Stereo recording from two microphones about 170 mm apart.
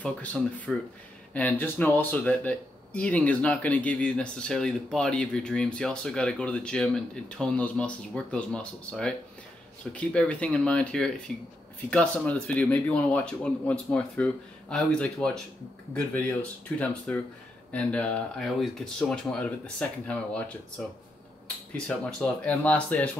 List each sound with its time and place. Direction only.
0.0 s speech: 10° left (ahead or behind)
21.7 s speech: 5° left (ahead or behind)